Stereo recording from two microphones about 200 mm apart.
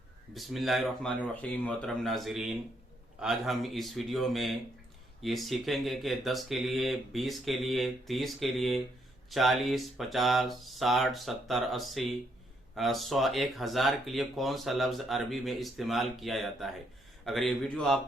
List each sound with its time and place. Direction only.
0.3 s speech: centre (ahead or behind)